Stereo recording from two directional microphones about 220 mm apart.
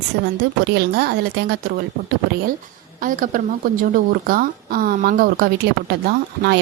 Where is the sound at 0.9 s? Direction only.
45° right (ahead or behind).